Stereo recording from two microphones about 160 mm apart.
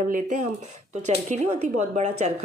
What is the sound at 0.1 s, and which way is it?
Speech, 55° right (ahead or behind).